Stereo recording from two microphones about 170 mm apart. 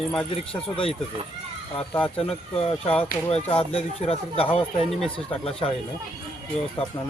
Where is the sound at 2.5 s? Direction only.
35° left (ahead or behind).